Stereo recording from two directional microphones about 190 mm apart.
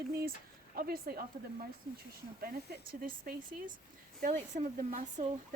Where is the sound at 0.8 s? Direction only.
50° right (ahead or behind).